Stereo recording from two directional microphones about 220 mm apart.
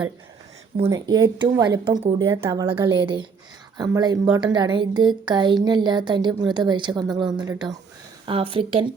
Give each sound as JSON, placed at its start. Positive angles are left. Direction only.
{"t": 0.9, "sound": "a woman's voice", "side_deg": -15}